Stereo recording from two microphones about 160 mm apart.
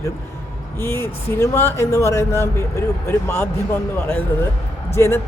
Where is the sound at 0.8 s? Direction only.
15° left (ahead or behind).